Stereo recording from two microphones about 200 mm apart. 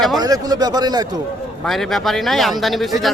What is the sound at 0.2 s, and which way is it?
Speech, 20° right (ahead or behind).